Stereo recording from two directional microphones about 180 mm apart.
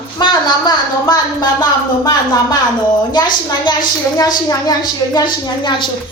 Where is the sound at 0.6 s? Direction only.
25° left (ahead or behind).